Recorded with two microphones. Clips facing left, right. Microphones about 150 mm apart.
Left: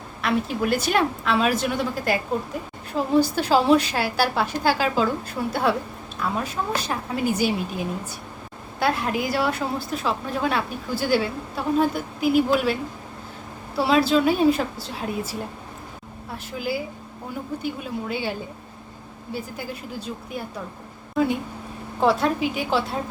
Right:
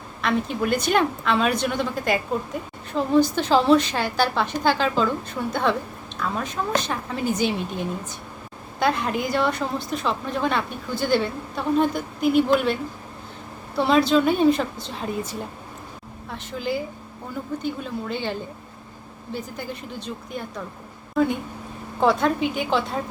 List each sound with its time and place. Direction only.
0.2 s a woman's voice: 5° left (ahead or behind)
13.7 s a woman's voice: 5° left (ahead or behind)
22.0 s a woman's voice: 5° left (ahead or behind)